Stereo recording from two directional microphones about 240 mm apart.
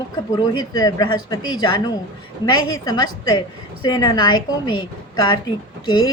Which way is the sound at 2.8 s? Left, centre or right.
Centre.